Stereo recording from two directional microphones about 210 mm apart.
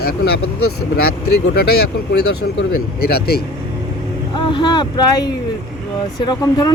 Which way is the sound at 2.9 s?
50° left (ahead or behind).